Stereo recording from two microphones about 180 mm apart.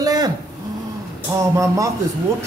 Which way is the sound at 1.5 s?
15° right (ahead or behind).